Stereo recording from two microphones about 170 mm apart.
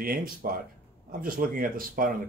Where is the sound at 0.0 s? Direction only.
60° right (ahead or behind).